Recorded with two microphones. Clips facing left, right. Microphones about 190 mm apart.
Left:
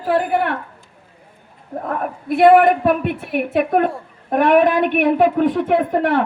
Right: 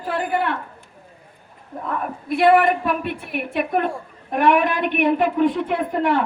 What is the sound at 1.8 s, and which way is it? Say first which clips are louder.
A woman's voice: left 3 dB; 55° left (ahead or behind).